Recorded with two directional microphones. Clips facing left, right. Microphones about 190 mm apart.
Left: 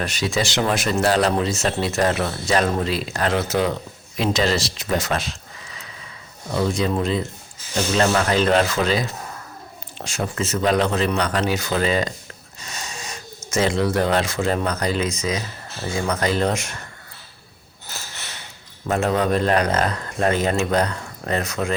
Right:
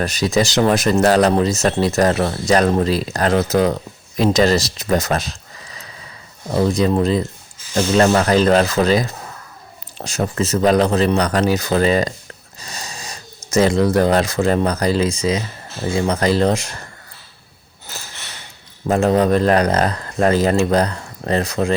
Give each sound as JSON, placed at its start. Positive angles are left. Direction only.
{"t": 0.0, "sound": "speech", "side_deg": -40}
{"t": 18.9, "sound": "speech", "side_deg": -35}